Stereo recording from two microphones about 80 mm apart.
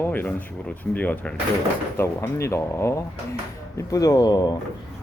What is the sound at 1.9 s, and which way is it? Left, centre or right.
Speech, left.